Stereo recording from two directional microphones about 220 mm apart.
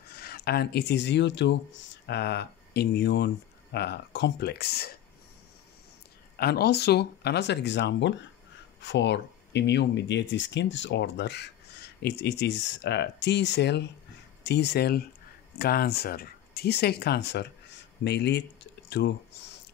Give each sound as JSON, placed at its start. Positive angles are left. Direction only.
{"t": 0.1, "sound": "speech", "side_deg": 45}
{"t": 6.3, "sound": "speech", "side_deg": 45}
{"t": 19.3, "sound": "a sound", "side_deg": 50}